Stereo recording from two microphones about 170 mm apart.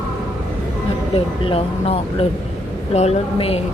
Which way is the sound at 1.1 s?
35° left (ahead or behind).